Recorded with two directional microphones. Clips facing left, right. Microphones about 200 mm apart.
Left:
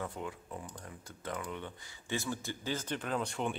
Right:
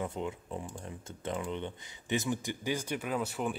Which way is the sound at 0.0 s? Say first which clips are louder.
Right 4 dB; 20° right (ahead or behind).